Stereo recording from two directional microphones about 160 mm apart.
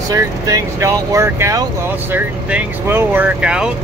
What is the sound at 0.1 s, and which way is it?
Speech, 20° right (ahead or behind).